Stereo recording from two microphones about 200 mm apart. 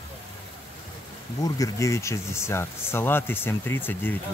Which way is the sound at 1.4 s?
15° left (ahead or behind).